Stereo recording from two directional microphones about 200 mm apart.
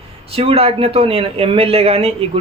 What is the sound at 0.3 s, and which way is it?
Speech, 30° right (ahead or behind).